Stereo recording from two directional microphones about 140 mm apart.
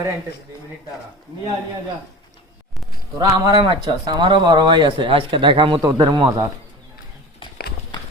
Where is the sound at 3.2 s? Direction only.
30° right (ahead or behind).